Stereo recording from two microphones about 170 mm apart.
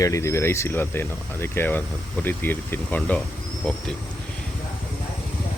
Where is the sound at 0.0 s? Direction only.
20° left (ahead or behind).